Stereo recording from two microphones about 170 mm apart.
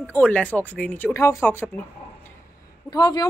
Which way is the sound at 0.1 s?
10° left (ahead or behind).